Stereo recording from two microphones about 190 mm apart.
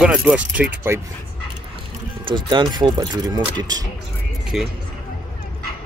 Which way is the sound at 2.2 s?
25° right (ahead or behind).